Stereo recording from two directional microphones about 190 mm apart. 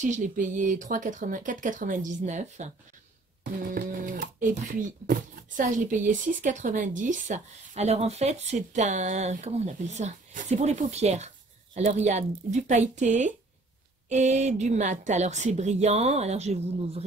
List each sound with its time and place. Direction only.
0.0 s speech: 40° right (ahead or behind)